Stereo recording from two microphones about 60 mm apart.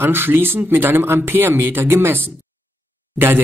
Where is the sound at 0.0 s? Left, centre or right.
Right.